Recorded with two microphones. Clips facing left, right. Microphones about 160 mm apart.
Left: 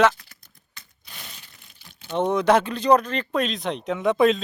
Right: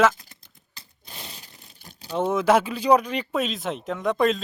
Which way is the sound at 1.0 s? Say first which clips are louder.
Right 4 dB; 30° right (ahead or behind).